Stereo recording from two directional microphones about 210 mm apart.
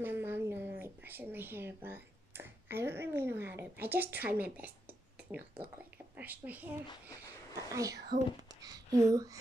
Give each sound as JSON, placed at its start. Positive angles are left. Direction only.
{"t": 0.0, "sound": "a woman's voice", "side_deg": -10}
{"t": 6.1, "sound": "a woman's voice", "side_deg": -5}
{"t": 8.1, "sound": "speech", "side_deg": -40}
{"t": 8.5, "sound": "speech", "side_deg": -20}